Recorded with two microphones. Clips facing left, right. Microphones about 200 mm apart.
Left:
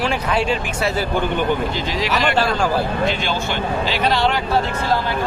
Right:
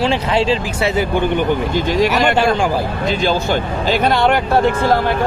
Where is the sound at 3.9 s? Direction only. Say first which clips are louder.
Right 6 dB; 50° right (ahead or behind).